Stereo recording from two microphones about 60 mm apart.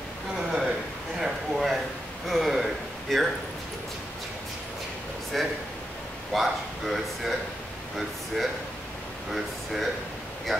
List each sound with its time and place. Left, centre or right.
0.4 s a sound: centre
2.2 s speech: centre
5.3 s speech: centre
9.3 s speech: centre